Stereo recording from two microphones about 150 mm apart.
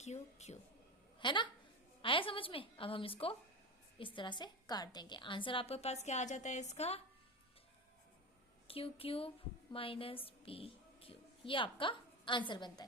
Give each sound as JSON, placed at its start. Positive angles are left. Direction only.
{"t": 0.0, "sound": "a woman's voice", "side_deg": 50}
{"t": 1.2, "sound": "a woman's voice", "side_deg": 30}
{"t": 8.6, "sound": "a woman's voice", "side_deg": 40}